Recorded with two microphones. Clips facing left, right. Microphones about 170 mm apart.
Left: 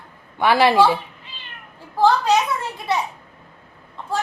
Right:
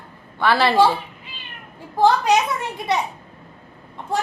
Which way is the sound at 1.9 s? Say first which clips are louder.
Even; 15° right (ahead or behind).